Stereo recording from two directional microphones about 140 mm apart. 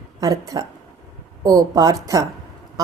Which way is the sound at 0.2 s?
25° right (ahead or behind).